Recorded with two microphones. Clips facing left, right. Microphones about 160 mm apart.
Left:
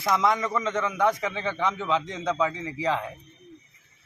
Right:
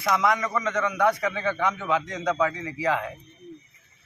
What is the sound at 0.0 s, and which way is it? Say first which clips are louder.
A man's voice: even; 25° left (ahead or behind).